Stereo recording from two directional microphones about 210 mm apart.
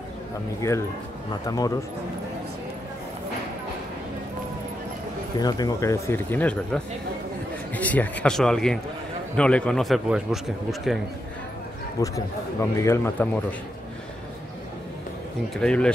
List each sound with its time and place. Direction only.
0.6 s speech: 15° left (ahead or behind)
5.4 s a man's voice: 15° left (ahead or behind); by 11.0 s centre (ahead or behind)
12.0 s speech: 15° left (ahead or behind)
15.5 s a man's voice: 5° left (ahead or behind)